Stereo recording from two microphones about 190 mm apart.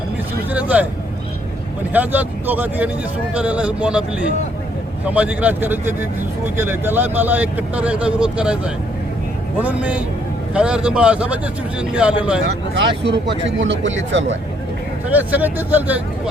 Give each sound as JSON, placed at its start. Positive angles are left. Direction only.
{"t": 0.5, "sound": "speech", "side_deg": -10}
{"t": 1.9, "sound": "speech", "side_deg": -10}
{"t": 5.0, "sound": "speech", "side_deg": -10}
{"t": 12.7, "sound": "speech", "side_deg": -70}
{"t": 15.3, "sound": "speech", "side_deg": -10}